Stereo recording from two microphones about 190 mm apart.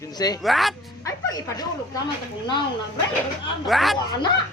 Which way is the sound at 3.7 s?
Centre (ahead or behind).